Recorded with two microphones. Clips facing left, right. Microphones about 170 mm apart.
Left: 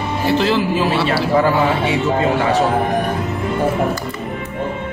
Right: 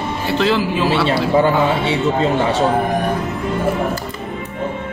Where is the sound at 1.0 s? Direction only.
25° right (ahead or behind).